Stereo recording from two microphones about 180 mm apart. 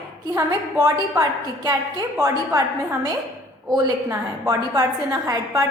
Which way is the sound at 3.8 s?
20° right (ahead or behind).